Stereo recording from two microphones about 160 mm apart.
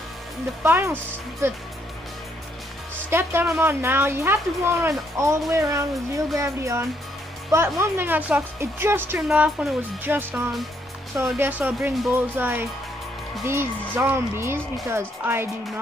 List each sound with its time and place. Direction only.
0.7 s a woman's voice: 15° right (ahead or behind)
3.1 s a woman's voice: 15° right (ahead or behind)